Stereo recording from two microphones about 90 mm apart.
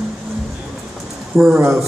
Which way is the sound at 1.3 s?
15° right (ahead or behind).